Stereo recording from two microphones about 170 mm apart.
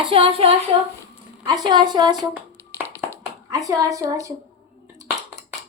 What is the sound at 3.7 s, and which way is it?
Speech, 20° right (ahead or behind).